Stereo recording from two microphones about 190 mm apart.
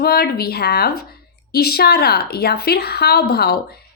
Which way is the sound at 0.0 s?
55° left (ahead or behind).